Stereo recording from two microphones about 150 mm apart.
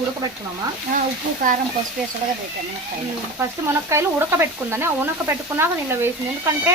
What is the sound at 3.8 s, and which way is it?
Speech, 15° right (ahead or behind).